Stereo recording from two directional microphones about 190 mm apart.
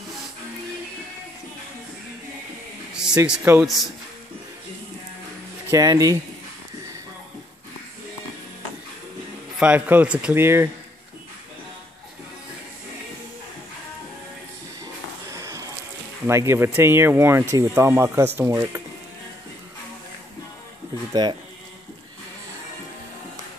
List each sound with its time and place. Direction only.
2.9 s a sound: 5° right (ahead or behind)
3.3 s speech: 10° right (ahead or behind)
3.6 s speech: centre (ahead or behind)
5.7 s speech: 20° right (ahead or behind)
9.6 s speech: 10° right (ahead or behind)
15.2 s a sound: 15° right (ahead or behind)
16.3 s speech: 15° right (ahead or behind)
21.1 s speech: 20° right (ahead or behind)